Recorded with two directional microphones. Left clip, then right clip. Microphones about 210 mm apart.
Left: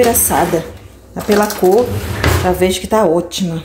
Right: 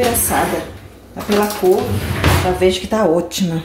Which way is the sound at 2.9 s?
20° left (ahead or behind).